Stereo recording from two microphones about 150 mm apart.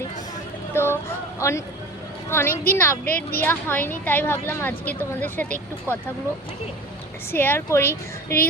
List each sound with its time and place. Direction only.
0.7 s a sound: 15° left (ahead or behind)
1.4 s speech: 20° left (ahead or behind)
3.1 s a woman's voice: 90° left
3.4 s speech: 15° left (ahead or behind)
7.3 s speech: 15° left (ahead or behind)